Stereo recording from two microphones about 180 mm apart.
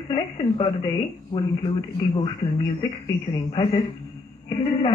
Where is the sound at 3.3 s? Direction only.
25° left (ahead or behind).